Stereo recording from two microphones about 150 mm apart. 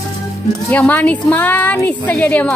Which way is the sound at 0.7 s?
10° left (ahead or behind).